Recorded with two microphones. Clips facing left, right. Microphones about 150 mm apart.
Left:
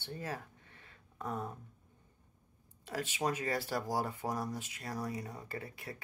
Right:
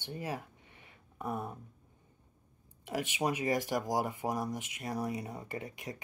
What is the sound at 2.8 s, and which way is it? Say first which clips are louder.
Speech: right 2 dB; 15° right (ahead or behind).